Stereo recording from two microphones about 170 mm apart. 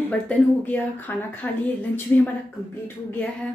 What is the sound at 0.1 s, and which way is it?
Speech, 10° left (ahead or behind).